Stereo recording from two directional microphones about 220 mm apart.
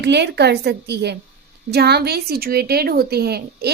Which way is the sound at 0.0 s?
50° right (ahead or behind).